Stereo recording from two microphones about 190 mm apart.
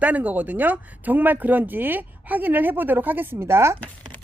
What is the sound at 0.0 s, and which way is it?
Speech, 10° right (ahead or behind).